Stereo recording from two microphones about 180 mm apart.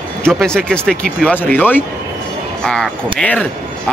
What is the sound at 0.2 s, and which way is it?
Speech, 5° left (ahead or behind).